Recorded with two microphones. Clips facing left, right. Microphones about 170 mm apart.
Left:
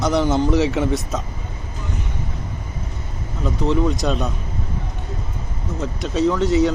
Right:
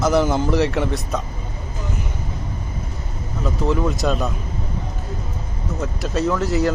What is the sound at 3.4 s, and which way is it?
Speech, centre (ahead or behind).